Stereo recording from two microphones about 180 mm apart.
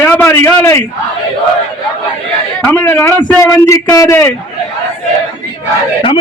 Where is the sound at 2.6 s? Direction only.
5° left (ahead or behind).